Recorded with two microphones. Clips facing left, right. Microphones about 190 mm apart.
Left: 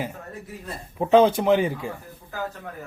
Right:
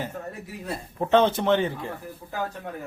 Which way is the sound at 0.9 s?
10° left (ahead or behind).